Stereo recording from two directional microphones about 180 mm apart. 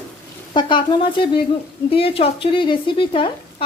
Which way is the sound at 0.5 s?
25° left (ahead or behind).